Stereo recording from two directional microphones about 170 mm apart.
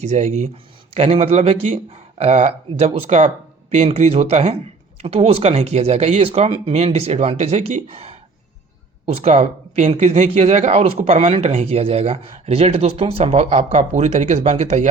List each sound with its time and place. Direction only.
0.0 s speech: 45° right (ahead or behind)
9.2 s speech: 40° right (ahead or behind)